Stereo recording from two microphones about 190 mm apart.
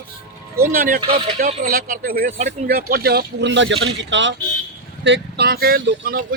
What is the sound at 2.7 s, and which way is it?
Speech, 50° right (ahead or behind).